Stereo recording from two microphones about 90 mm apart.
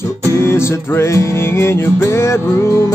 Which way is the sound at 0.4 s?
30° left (ahead or behind).